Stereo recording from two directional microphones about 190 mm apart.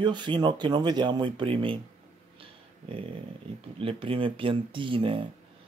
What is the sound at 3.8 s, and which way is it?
Speech, 30° right (ahead or behind).